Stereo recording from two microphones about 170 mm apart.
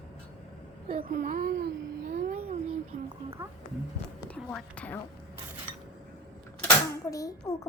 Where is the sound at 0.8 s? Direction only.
60° right (ahead or behind).